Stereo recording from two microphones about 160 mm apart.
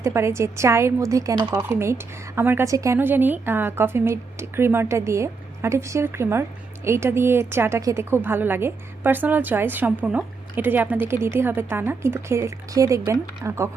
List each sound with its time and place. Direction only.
0.0 s a woman's voice: 15° right (ahead or behind)